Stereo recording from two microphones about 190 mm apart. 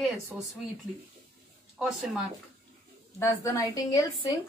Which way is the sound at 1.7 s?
5° right (ahead or behind).